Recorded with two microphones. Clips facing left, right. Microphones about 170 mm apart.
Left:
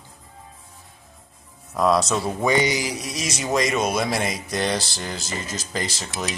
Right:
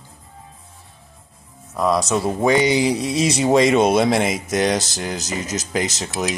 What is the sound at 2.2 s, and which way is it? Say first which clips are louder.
Speech: right 4 dB; 25° right (ahead or behind).